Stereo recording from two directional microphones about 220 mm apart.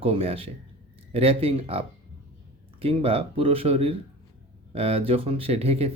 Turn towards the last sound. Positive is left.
turn(degrees=-25)  # may be behind; listen again after turning